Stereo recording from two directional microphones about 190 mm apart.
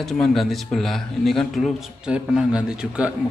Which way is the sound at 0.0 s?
Centre (ahead or behind).